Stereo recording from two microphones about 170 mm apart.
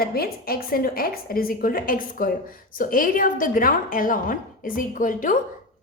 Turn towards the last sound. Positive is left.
turn(degrees=50)  # may be behind; listen again after turning